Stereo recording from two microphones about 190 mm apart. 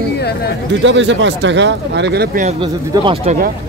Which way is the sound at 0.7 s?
70° right (ahead or behind).